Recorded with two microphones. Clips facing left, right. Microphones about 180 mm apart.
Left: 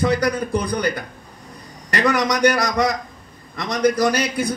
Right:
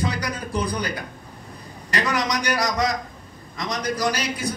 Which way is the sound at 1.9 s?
60° left (ahead or behind).